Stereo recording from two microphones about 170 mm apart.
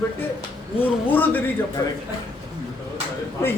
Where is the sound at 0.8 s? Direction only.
10° left (ahead or behind).